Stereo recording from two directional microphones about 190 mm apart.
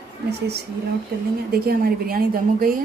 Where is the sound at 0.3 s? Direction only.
60° right (ahead or behind).